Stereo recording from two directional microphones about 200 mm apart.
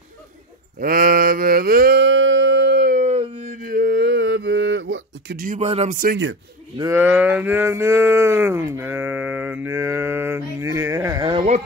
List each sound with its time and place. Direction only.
0.7 s mantra: 45° right (ahead or behind); by 5.4 s 65° right (ahead or behind)
5.6 s speech: 30° right (ahead or behind)
6.8 s speech: 15° right (ahead or behind)